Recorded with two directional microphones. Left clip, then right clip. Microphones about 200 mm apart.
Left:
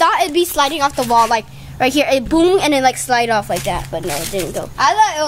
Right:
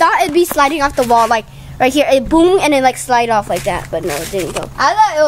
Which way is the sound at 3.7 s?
5° right (ahead or behind).